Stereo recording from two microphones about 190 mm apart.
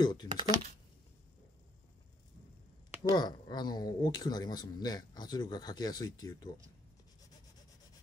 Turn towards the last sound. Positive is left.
turn(degrees=20)  # may be behind; listen again after turning